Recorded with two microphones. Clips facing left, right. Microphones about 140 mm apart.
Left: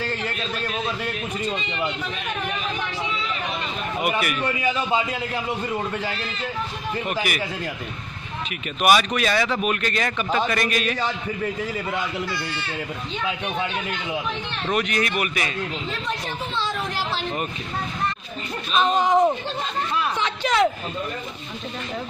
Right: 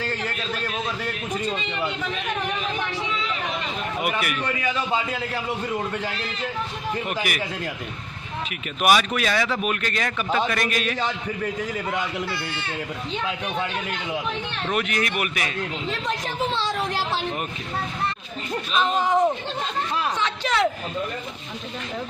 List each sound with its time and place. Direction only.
4.2 s speech: centre (ahead or behind)
4.6 s a man's voice: 20° left (ahead or behind)
7.0 s speech: centre (ahead or behind)
8.8 s speech: centre (ahead or behind)
14.7 s speech: centre (ahead or behind)
16.5 s speech: 80° right
18.7 s speech: 20° left (ahead or behind)
20.2 s a sound: 15° left (ahead or behind)